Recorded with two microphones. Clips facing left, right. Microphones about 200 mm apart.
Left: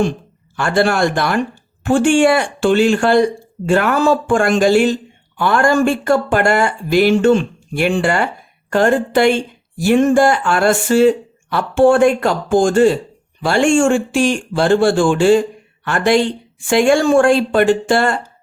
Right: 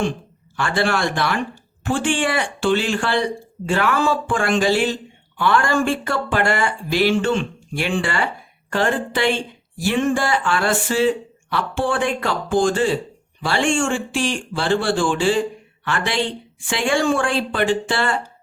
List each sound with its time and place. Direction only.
0.5 s speech: 45° left (ahead or behind)